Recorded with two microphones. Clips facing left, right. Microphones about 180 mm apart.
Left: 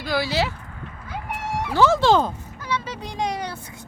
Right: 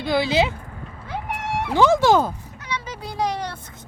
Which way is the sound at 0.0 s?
20° right (ahead or behind).